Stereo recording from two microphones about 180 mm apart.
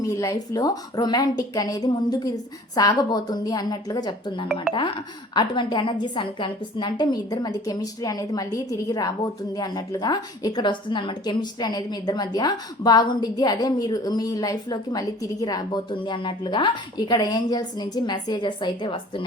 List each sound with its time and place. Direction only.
0.0 s a woman's voice: 20° left (ahead or behind)